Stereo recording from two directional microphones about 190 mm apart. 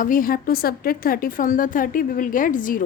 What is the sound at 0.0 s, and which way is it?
A woman's voice, 45° left (ahead or behind).